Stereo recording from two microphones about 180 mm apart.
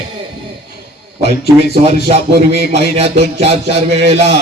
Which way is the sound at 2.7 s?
35° right (ahead or behind).